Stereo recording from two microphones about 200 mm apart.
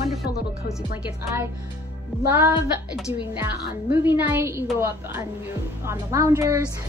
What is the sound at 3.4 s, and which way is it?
A woman's voice, 10° right (ahead or behind).